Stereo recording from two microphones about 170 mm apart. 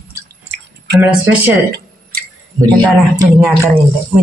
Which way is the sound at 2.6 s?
25° right (ahead or behind).